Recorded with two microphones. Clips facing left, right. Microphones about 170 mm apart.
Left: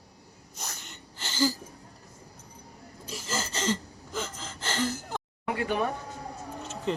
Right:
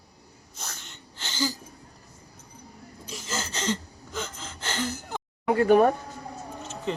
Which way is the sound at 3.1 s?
5° left (ahead or behind).